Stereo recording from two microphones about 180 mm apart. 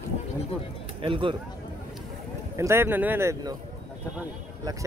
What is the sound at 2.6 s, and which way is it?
Speech, 15° right (ahead or behind).